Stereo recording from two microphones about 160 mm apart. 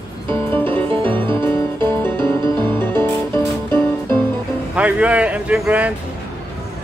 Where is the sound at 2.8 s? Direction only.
15° left (ahead or behind).